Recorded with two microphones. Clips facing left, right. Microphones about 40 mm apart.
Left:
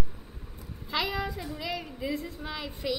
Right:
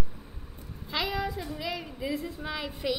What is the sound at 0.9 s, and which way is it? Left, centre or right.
A woman's voice, centre.